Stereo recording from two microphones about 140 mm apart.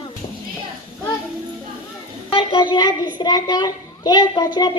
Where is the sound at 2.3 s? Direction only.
35° left (ahead or behind).